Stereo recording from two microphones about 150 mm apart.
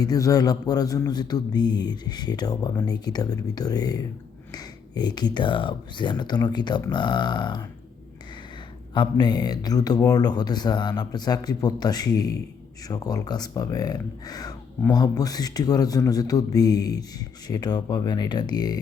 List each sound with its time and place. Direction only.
0.0 s speech: 25° left (ahead or behind)
9.0 s speech: 25° left (ahead or behind)